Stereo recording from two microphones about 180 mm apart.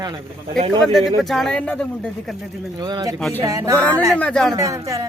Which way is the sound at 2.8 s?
25° right (ahead or behind).